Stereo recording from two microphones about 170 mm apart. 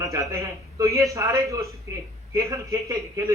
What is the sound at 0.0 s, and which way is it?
A man's voice, 20° right (ahead or behind).